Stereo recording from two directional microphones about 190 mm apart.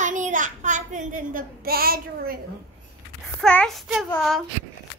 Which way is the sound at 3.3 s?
5° left (ahead or behind).